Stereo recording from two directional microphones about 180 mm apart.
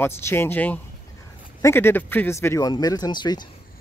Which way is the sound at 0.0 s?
15° left (ahead or behind).